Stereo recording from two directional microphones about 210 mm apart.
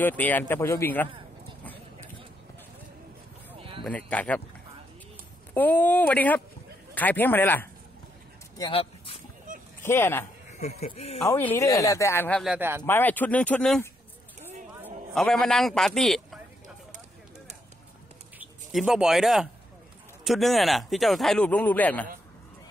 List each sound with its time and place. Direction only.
0.0 s speech: 10° left (ahead or behind)
1.6 s a sound: 10° left (ahead or behind)
3.5 s a sound: 25° right (ahead or behind)
3.8 s speech: 5° left (ahead or behind)
5.5 s speech: 10° left (ahead or behind)
8.5 s speech: 25° left (ahead or behind)
9.5 s honk: 40° right (ahead or behind)
9.8 s speech: 10° left (ahead or behind)
10.6 s speech: 30° left (ahead or behind)
11.2 s speech: 10° left (ahead or behind)
12.5 s speech: 10° right (ahead or behind)
12.8 s speech: 10° left (ahead or behind)
15.1 s speech: 5° left (ahead or behind)
18.4 s speech: centre (ahead or behind)